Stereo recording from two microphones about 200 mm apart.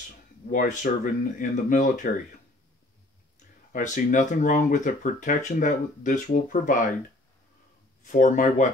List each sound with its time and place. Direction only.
0.5 s speech: 40° left (ahead or behind)
3.7 s speech: 40° left (ahead or behind)
8.0 s speech: 40° left (ahead or behind)